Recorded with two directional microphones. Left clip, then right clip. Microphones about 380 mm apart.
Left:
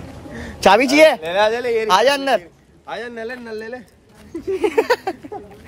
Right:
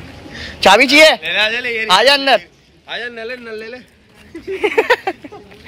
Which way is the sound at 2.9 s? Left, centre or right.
Left.